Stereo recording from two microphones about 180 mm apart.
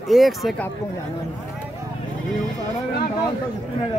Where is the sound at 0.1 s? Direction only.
Centre (ahead or behind).